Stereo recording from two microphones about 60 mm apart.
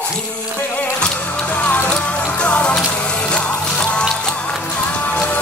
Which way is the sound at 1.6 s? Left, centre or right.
Left.